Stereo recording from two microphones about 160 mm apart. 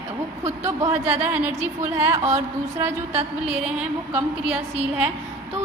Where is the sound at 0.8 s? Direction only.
15° right (ahead or behind).